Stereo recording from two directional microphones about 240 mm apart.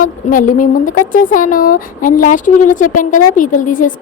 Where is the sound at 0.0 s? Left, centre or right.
Left.